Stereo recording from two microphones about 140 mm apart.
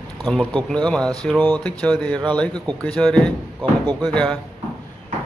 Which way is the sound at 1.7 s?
Centre (ahead or behind).